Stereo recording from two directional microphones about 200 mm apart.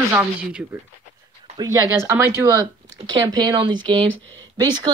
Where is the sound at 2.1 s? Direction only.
10° right (ahead or behind).